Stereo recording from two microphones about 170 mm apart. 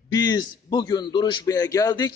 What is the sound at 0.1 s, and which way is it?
A man's voice, 25° left (ahead or behind).